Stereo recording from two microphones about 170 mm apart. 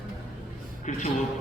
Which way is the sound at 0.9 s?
45° left (ahead or behind).